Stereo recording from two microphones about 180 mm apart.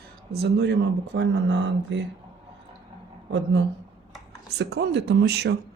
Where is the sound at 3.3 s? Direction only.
85° right.